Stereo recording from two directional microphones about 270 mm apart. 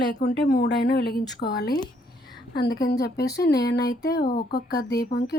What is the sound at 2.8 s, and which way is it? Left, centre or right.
Speech, left.